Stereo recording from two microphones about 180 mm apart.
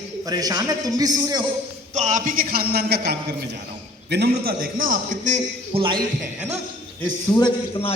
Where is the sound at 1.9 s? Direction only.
40° right (ahead or behind).